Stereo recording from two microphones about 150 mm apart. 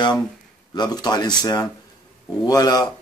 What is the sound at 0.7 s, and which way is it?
Speech, 25° left (ahead or behind).